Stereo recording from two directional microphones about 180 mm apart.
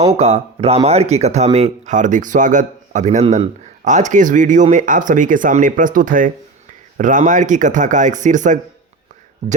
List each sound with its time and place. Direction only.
0.0 s a man's voice: 35° right (ahead or behind)